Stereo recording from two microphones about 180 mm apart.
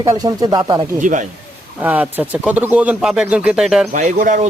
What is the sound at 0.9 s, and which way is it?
Speech, 45° right (ahead or behind).